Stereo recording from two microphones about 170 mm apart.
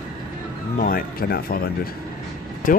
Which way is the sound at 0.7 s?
60° left (ahead or behind).